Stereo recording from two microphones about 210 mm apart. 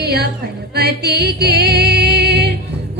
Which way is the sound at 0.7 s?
50° right (ahead or behind).